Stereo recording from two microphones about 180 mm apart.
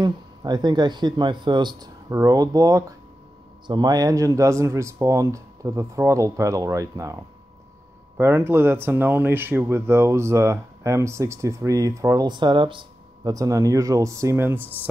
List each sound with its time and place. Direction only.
0.0 s speech: 25° right (ahead or behind)
8.2 s speech: 15° right (ahead or behind)